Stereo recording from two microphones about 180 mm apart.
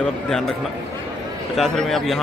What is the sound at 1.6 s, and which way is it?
Speech, centre (ahead or behind).